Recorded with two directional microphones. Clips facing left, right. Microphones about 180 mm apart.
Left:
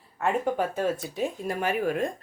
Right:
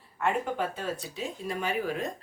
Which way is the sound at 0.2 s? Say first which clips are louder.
Left 3 dB; 45° left (ahead or behind).